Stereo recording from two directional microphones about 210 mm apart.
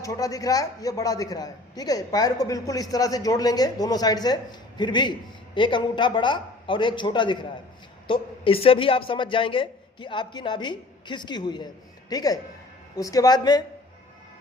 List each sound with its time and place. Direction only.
0.0 s a man's voice: 15° left (ahead or behind)